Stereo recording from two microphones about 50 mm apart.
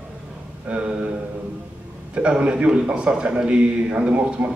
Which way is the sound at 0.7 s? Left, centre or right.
Right.